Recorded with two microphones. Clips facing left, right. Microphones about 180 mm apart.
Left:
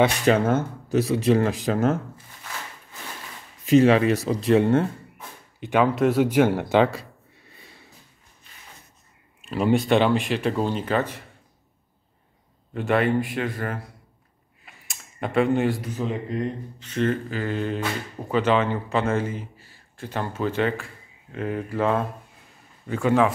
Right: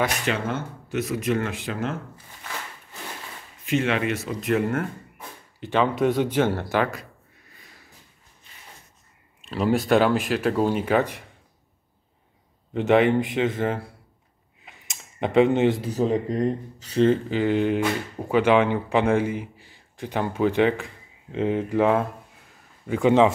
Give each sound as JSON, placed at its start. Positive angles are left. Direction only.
{"t": 0.3, "sound": "speech", "side_deg": 40}
{"t": 3.6, "sound": "speech", "side_deg": 35}
{"t": 5.6, "sound": "speech", "side_deg": 10}
{"t": 9.5, "sound": "speech", "side_deg": 0}
{"t": 12.7, "sound": "a man's voice", "side_deg": -20}
{"t": 14.6, "sound": "a sound", "side_deg": -20}
{"t": 15.9, "sound": "a man's voice", "side_deg": -40}